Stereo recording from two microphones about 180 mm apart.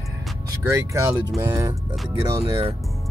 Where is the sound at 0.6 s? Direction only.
15° right (ahead or behind).